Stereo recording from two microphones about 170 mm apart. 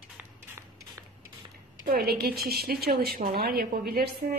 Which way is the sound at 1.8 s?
60° right (ahead or behind).